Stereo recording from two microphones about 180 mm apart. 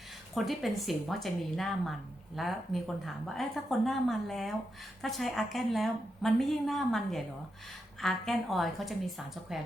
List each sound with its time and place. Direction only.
0.3 s speech: centre (ahead or behind)